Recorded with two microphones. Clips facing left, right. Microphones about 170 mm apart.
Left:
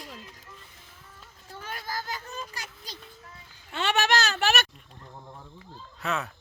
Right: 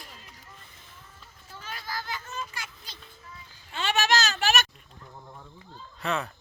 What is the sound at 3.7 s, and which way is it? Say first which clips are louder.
Speech: left 1 dB; 60° left (ahead or behind).